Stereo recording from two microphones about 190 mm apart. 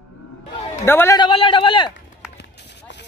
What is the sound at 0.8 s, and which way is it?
Speech, 10° left (ahead or behind).